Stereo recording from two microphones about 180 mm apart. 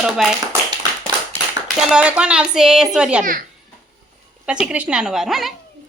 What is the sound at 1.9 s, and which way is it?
A woman's voice, 5° right (ahead or behind).